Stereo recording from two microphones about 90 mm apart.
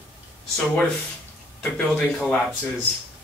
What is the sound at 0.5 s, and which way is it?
Speech, 5° left (ahead or behind).